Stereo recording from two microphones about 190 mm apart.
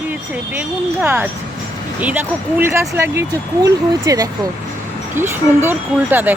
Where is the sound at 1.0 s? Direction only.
10° right (ahead or behind).